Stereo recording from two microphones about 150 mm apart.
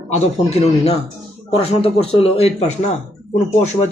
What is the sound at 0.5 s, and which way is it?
Speech, 45° left (ahead or behind).